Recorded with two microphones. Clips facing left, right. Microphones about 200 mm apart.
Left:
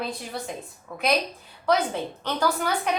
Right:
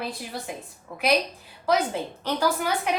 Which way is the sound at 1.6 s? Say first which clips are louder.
Even; 10° right (ahead or behind).